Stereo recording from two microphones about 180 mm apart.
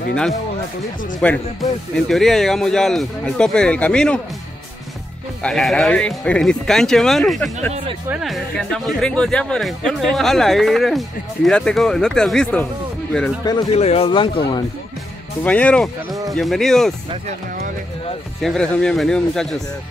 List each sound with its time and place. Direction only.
1.2 s speech: 5° left (ahead or behind)
5.4 s speech: 5° left (ahead or behind)
13.4 s speech: 20° left (ahead or behind)
13.7 s speech: 35° left (ahead or behind)
15.4 s speech: 10° left (ahead or behind)
18.4 s speech: 5° left (ahead or behind)